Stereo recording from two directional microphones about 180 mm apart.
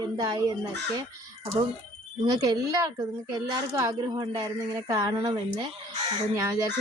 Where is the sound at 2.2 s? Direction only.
20° right (ahead or behind).